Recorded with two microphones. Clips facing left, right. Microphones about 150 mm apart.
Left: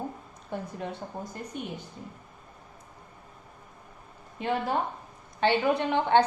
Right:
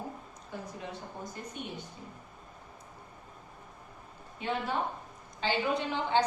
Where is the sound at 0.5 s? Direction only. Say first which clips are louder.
Left 7 dB; 60° left (ahead or behind).